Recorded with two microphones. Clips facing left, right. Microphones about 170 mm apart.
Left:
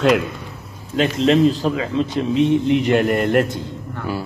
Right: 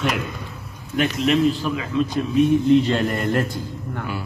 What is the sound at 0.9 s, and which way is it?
A man's voice, 30° left (ahead or behind).